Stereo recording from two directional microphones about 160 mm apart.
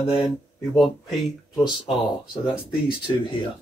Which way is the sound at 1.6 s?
30° left (ahead or behind).